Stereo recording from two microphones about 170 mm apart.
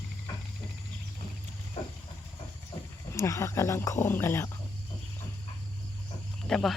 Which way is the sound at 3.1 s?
15° left (ahead or behind).